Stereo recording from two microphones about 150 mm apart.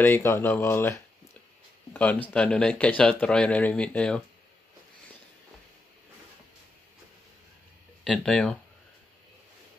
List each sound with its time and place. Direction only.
0.0 s speech: 15° left (ahead or behind)
2.0 s speech: 10° left (ahead or behind)
8.0 s speech: 5° left (ahead or behind)